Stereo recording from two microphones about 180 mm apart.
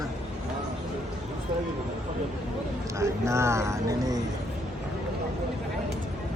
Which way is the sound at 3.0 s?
15° right (ahead or behind).